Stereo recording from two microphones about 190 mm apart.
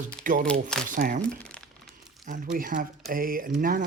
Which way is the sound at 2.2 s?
45° right (ahead or behind).